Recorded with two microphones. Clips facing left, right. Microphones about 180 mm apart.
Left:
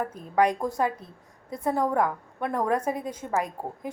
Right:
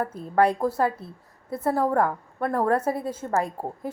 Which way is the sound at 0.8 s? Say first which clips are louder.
Right 2 dB; 15° left (ahead or behind).